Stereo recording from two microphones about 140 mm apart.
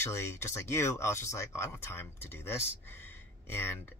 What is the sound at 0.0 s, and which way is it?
Speech, 20° left (ahead or behind).